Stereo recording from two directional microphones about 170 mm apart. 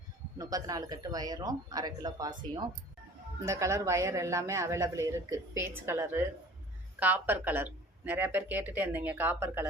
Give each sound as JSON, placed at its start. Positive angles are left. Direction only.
{"t": 0.3, "sound": "speech", "side_deg": -20}